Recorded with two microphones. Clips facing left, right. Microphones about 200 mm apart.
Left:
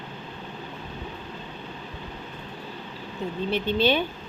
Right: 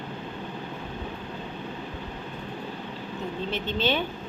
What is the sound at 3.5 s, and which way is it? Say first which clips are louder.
Speech: left 5 dB; 15° left (ahead or behind).